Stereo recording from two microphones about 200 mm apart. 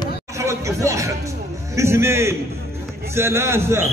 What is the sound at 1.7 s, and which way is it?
Speech, 15° right (ahead or behind).